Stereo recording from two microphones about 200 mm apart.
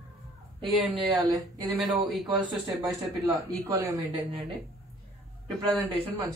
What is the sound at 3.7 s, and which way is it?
Speech, 15° right (ahead or behind).